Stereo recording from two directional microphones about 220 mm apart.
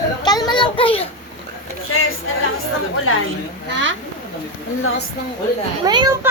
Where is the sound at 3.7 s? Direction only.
55° right (ahead or behind).